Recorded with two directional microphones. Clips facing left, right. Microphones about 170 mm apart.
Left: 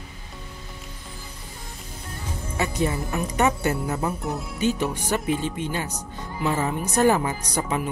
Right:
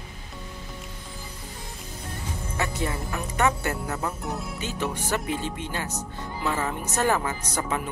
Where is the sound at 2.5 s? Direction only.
20° left (ahead or behind).